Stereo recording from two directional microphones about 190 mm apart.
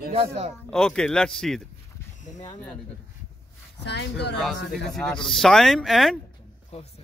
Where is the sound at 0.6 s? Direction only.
5° left (ahead or behind).